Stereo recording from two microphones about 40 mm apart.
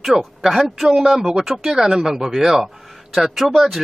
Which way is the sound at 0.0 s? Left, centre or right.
Centre.